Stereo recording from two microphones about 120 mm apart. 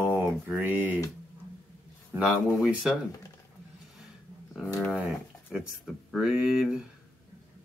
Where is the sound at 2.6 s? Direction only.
Centre (ahead or behind).